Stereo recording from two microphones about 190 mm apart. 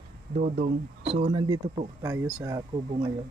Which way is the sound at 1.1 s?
25° right (ahead or behind).